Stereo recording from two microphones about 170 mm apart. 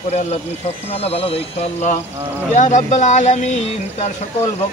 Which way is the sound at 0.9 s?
35° left (ahead or behind).